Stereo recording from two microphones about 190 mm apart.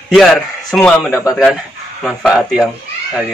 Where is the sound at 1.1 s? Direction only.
15° left (ahead or behind).